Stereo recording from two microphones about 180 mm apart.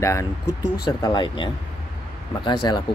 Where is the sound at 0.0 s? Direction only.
15° left (ahead or behind).